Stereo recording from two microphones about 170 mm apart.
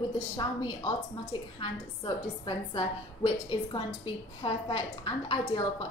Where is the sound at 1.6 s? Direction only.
25° left (ahead or behind).